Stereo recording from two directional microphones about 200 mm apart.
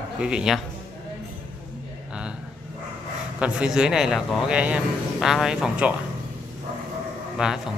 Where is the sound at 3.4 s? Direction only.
5° right (ahead or behind).